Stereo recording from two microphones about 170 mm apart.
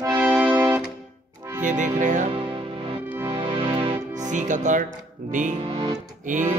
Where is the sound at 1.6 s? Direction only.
45° right (ahead or behind).